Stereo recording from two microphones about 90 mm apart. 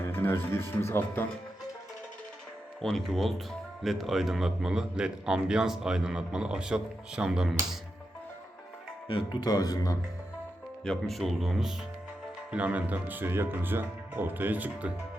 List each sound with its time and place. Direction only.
0.0 s speech: 25° left (ahead or behind)
2.8 s a man's voice: 5° left (ahead or behind)
9.0 s speech: 55° left (ahead or behind)
10.8 s speech: centre (ahead or behind)
12.5 s speech: 15° right (ahead or behind)